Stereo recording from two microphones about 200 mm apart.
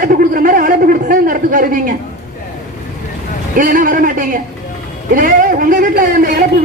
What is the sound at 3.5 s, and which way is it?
A man's voice, 40° right (ahead or behind).